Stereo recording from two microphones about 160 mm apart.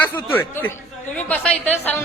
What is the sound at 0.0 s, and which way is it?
A man's voice, 10° left (ahead or behind).